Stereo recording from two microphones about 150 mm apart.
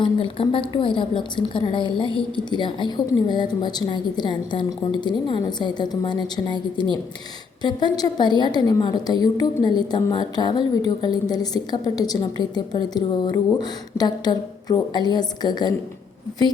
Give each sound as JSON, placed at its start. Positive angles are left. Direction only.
{"t": 0.0, "sound": "a woman's voice", "side_deg": 35}